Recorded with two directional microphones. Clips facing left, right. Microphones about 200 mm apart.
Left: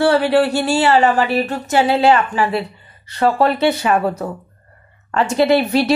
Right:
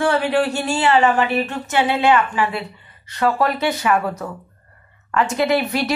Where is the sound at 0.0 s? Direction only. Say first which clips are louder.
Left 4 dB; 35° left (ahead or behind).